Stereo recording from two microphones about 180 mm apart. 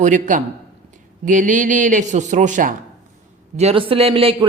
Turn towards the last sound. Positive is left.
turn(degrees=-30)  # may be behind; listen again after turning